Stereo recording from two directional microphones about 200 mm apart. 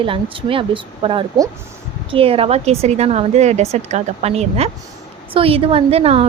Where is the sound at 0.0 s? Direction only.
25° right (ahead or behind).